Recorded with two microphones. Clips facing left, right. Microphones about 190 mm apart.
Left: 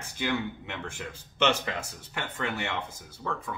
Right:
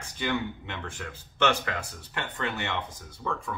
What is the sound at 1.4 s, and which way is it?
Speech, 20° left (ahead or behind).